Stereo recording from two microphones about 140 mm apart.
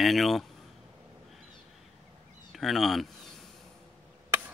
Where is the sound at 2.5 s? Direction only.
Centre (ahead or behind).